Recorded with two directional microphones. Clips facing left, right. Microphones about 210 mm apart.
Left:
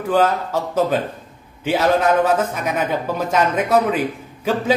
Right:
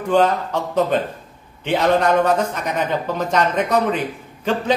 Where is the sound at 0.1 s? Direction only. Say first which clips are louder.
Right 1 dB; 5° left (ahead or behind).